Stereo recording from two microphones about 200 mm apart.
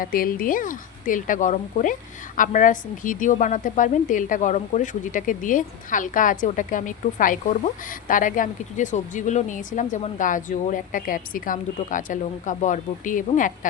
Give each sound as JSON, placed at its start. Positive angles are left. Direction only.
{"t": 0.0, "sound": "a woman's voice", "side_deg": 45}